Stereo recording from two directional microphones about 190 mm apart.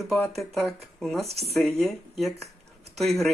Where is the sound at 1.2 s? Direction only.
35° right (ahead or behind).